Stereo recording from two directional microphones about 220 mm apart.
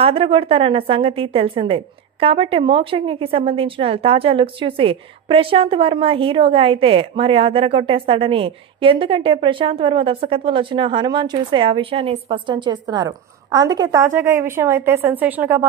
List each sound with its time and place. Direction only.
0.0 s a woman's voice: 25° right (ahead or behind); by 15.6 s 10° right (ahead or behind)